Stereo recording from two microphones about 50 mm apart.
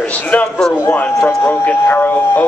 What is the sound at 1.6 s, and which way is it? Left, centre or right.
Speech, left.